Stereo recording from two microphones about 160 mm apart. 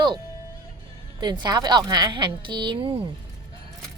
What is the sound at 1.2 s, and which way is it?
Speech, 25° right (ahead or behind).